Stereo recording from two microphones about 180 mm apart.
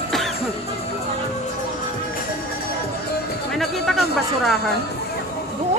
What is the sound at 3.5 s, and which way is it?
Speech, centre (ahead or behind).